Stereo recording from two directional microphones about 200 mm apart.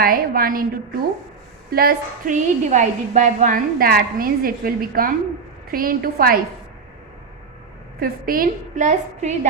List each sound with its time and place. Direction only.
0.0 s a woman's voice: 45° right (ahead or behind)
1.7 s a woman's voice: 50° right (ahead or behind)
7.9 s a woman's voice: 45° right (ahead or behind)